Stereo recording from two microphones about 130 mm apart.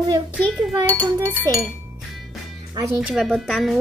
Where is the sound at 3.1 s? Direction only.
Centre (ahead or behind).